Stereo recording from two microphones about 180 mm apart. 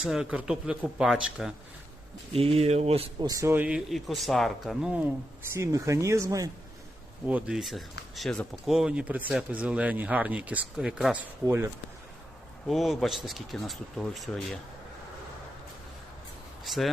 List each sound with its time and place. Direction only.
0.0 s speech: 5° right (ahead or behind)
2.3 s speech: 30° right (ahead or behind)
3.2 s speech: 15° right (ahead or behind)
5.5 s speech: 15° right (ahead or behind)
7.3 s speech: 5° right (ahead or behind)
12.6 s speech: centre (ahead or behind)
16.6 s speech: centre (ahead or behind)